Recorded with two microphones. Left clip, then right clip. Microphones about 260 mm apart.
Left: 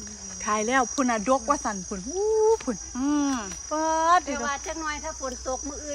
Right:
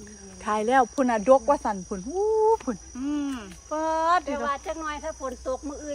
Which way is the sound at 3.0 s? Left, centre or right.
Centre.